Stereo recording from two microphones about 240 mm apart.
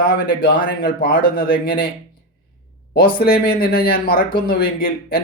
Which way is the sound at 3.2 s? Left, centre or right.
Left.